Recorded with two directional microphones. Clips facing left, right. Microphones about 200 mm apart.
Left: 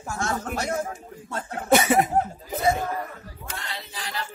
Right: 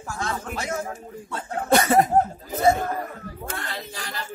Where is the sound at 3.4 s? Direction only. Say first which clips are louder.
Right 3 dB; 50° right (ahead or behind).